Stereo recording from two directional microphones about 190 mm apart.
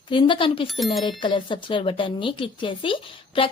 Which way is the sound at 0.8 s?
Centre (ahead or behind).